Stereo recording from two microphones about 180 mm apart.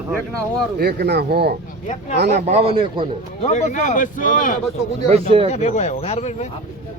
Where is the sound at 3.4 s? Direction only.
40° left (ahead or behind).